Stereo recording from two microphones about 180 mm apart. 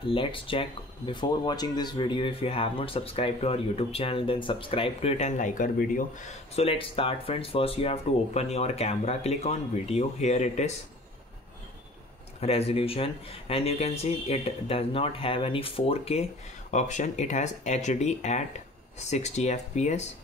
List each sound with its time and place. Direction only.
0.0 s speech: 30° left (ahead or behind)
12.4 s speech: 35° left (ahead or behind)